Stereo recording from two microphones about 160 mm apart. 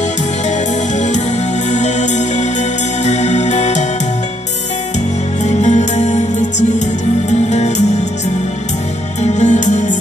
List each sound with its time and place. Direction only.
0.9 s music: 45° left (ahead or behind)
5.4 s music: 45° left (ahead or behind)
7.2 s music: 45° left (ahead or behind)
9.2 s music: 45° left (ahead or behind)